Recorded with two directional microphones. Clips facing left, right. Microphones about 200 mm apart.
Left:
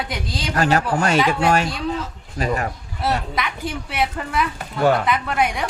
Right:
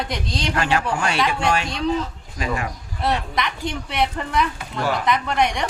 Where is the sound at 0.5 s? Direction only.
40° left (ahead or behind).